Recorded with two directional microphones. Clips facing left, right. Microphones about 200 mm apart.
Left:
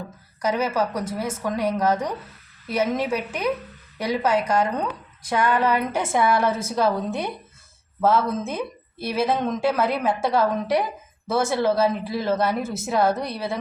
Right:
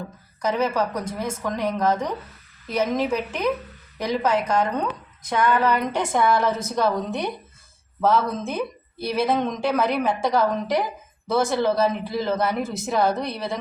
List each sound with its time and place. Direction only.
0.4 s a woman's voice: 10° left (ahead or behind)